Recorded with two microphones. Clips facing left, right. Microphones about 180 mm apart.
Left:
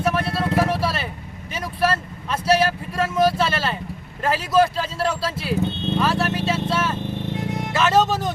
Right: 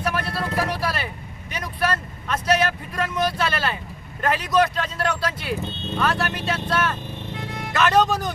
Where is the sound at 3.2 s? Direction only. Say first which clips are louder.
Left 5 dB; 25° left (ahead or behind).